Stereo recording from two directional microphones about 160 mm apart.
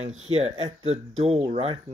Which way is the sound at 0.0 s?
40° right (ahead or behind).